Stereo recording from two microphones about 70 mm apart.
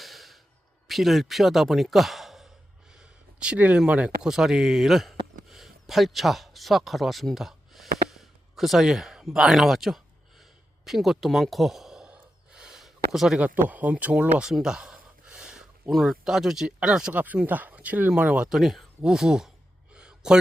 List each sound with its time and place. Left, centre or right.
0.0 s sigh: centre
0.9 s speech: centre
2.9 s a sound: centre
3.8 s speech: centre
12.1 s gasp: centre
13.4 s speech: right
14.5 s a sound: centre
15.9 s speech: centre
17.4 s speech: right
18.4 s speech: centre
19.9 s a sound: centre